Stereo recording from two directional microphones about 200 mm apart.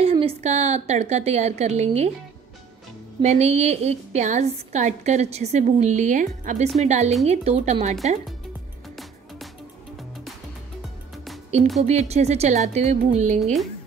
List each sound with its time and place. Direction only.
0.0 s a woman's voice: 30° right (ahead or behind)
3.2 s a woman's voice: 35° right (ahead or behind)
11.8 s a woman's voice: 35° right (ahead or behind)